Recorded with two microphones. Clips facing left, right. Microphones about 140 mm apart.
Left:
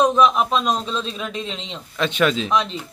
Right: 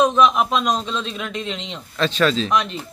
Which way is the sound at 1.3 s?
35° left (ahead or behind).